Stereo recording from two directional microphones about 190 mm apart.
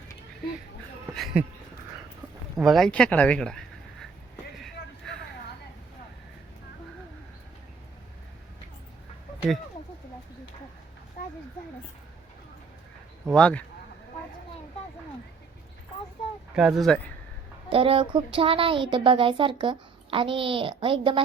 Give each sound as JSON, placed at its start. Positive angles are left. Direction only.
{"t": 1.1, "sound": "speech", "side_deg": 0}
{"t": 2.6, "sound": "speech", "side_deg": 0}
{"t": 4.5, "sound": "vehicle", "side_deg": 0}
{"t": 13.3, "sound": "speech", "side_deg": 5}
{"t": 16.6, "sound": "speech", "side_deg": -5}
{"t": 17.7, "sound": "a woman's voice", "side_deg": -30}